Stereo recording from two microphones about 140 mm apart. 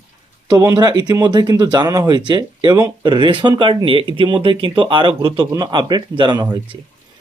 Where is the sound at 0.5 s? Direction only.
25° right (ahead or behind).